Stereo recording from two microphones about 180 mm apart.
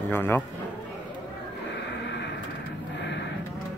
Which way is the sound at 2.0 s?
70° left (ahead or behind).